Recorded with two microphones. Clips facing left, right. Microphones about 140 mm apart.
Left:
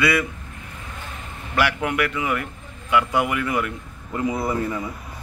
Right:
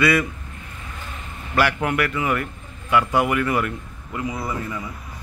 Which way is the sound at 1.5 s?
15° left (ahead or behind).